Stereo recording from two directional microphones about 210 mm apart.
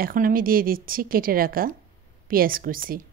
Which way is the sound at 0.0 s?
40° right (ahead or behind).